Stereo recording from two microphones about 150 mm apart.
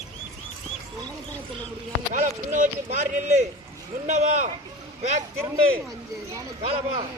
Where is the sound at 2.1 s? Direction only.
55° right (ahead or behind).